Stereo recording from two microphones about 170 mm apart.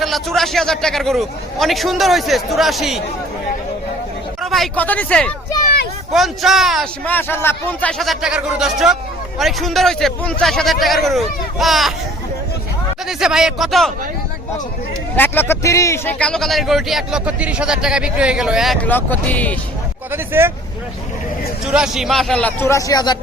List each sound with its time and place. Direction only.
0.0 s speech: centre (ahead or behind)
4.4 s speech: centre (ahead or behind)
7.0 s speech: 10° left (ahead or behind)
13.1 s speech: 5° right (ahead or behind)
15.1 s speech: 10° left (ahead or behind)
18.9 s a man's voice: 10° left (ahead or behind)
20.1 s speech: 15° right (ahead or behind)
21.7 s a man's voice: 5° right (ahead or behind); by 23.1 s 20° left (ahead or behind)